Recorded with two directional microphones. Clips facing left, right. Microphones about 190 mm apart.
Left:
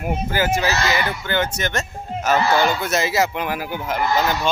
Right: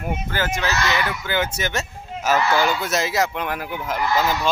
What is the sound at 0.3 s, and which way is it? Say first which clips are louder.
Speech: left 5 dB; 10° left (ahead or behind).